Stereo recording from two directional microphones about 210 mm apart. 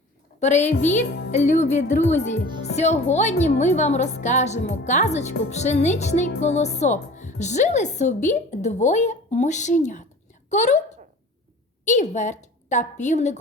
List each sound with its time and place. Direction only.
0.3 s a woman's voice: 35° left (ahead or behind)
11.9 s a woman's voice: 35° left (ahead or behind)